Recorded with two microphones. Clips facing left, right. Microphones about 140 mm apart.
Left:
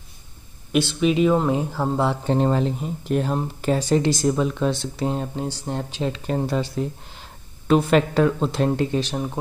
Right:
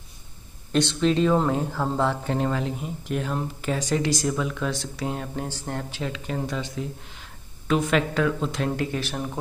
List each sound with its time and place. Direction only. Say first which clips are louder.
0.7 s speech: left 2 dB; 10° left (ahead or behind)
2.2 s speech: left 5 dB; 30° left (ahead or behind)
6.1 s speech: left 6 dB; 35° left (ahead or behind); by 9.4 s 20° left (ahead or behind)